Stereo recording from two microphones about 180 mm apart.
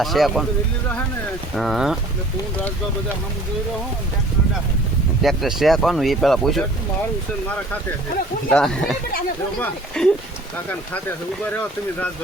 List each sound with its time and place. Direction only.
0.0 s speech: centre (ahead or behind)
1.5 s speech: centre (ahead or behind)
5.2 s speech: centre (ahead or behind)
8.4 s speech: 5° left (ahead or behind)